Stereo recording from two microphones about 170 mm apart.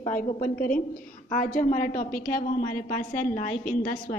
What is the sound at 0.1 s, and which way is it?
A woman's voice, 50° left (ahead or behind).